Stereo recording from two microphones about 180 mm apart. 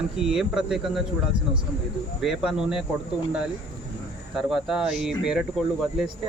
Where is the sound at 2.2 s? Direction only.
5° right (ahead or behind).